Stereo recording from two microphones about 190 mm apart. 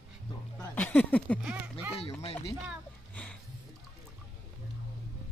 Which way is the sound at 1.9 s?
30° left (ahead or behind).